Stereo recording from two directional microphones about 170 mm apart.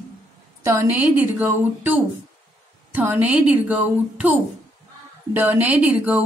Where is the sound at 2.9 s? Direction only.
10° right (ahead or behind).